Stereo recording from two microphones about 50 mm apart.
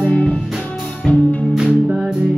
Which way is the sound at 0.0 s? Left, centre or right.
Left.